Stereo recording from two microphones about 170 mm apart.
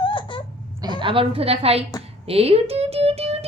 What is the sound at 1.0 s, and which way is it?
Speech, 30° right (ahead or behind).